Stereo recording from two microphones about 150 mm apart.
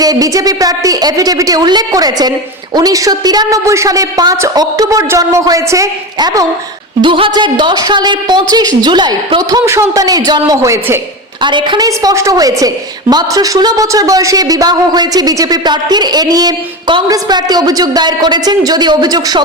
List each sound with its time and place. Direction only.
0.0 s a woman's voice: 25° right (ahead or behind)
11.4 s a woman's voice: 30° right (ahead or behind)